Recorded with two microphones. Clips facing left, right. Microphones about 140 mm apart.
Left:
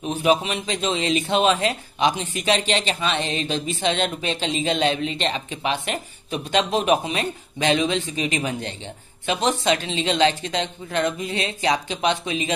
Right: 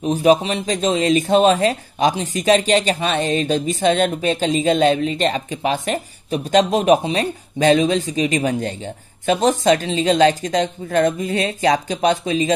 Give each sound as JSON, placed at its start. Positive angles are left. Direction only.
{"t": 0.0, "sound": "speech", "side_deg": -40}